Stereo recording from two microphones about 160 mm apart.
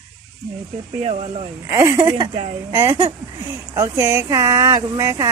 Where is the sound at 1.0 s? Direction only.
40° right (ahead or behind).